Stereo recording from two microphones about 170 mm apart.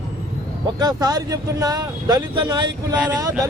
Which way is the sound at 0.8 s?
20° right (ahead or behind).